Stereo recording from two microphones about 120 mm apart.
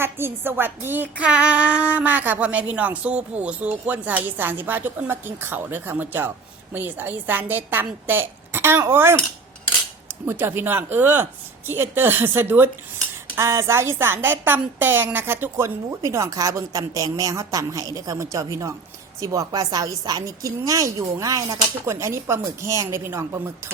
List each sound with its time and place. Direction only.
0.0 s child singing: 20° right (ahead or behind)
10.2 s child singing: 20° right (ahead or behind)
13.3 s a woman's voice: 25° right (ahead or behind)